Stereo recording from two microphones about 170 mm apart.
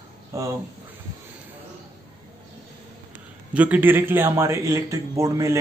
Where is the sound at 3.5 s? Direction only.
10° right (ahead or behind).